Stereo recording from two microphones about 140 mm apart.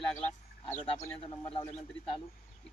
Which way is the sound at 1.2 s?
35° left (ahead or behind).